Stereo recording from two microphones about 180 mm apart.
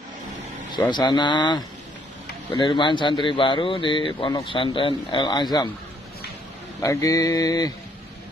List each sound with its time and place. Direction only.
0.7 s speech: 25° left (ahead or behind)
2.6 s speech: 25° left (ahead or behind)
6.8 s speech: 20° left (ahead or behind)